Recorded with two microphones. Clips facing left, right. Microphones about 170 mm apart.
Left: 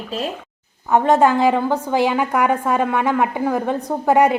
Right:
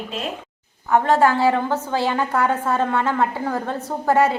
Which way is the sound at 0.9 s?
20° left (ahead or behind).